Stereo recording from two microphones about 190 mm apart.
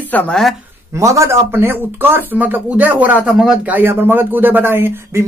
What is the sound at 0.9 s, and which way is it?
A man's voice, 15° right (ahead or behind).